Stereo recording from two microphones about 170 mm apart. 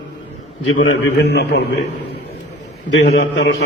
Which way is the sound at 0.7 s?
90° left.